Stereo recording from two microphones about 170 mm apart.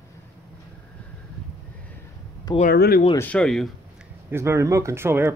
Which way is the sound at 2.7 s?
70° left (ahead or behind).